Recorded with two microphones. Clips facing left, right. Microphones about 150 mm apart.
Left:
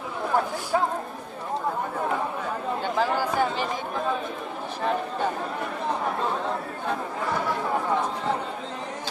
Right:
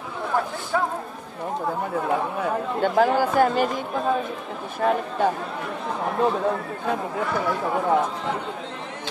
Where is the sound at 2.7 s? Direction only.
55° right (ahead or behind).